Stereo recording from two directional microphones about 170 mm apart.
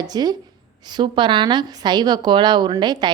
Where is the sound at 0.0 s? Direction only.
25° right (ahead or behind).